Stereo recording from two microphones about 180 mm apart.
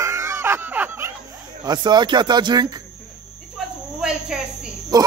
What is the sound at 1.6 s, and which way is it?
Speech, 25° right (ahead or behind).